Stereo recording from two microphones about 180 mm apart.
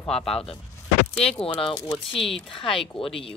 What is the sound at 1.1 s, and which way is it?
Speech, 30° left (ahead or behind).